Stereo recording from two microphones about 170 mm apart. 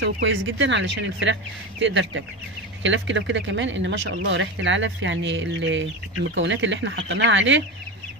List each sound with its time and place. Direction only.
0.0 s speech: 90° right